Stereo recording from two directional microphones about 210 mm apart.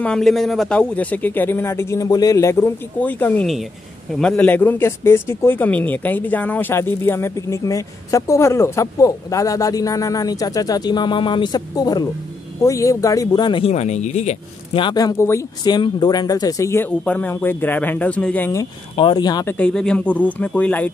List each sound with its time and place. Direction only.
0.0 s speech: 5° left (ahead or behind)
18.9 s speech: 20° left (ahead or behind)
19.5 s speech: 5° left (ahead or behind)